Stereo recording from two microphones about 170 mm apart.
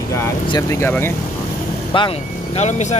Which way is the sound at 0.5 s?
20° left (ahead or behind).